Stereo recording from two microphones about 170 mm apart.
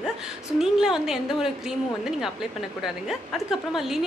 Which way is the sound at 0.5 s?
Centre (ahead or behind).